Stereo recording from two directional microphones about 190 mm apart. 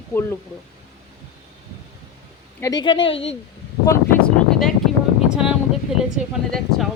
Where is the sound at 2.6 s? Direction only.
20° left (ahead or behind).